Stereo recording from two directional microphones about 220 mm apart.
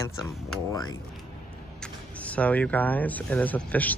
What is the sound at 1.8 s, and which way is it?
Speech, 5° left (ahead or behind).